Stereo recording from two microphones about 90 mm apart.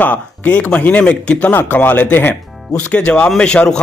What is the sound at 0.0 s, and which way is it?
Speech, 15° left (ahead or behind).